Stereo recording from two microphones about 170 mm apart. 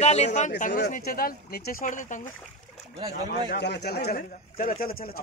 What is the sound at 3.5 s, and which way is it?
Speech, 75° left (ahead or behind).